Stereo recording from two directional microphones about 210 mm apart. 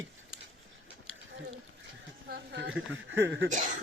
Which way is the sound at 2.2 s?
50° right (ahead or behind).